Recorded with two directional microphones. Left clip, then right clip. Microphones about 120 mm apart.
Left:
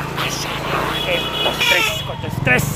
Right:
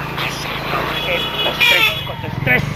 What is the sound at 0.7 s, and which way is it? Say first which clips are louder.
Vehicle: even; 55° left (ahead or behind).